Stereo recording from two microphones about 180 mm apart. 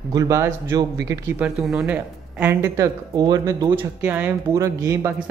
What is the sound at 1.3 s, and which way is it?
A woman's voice, 5° right (ahead or behind).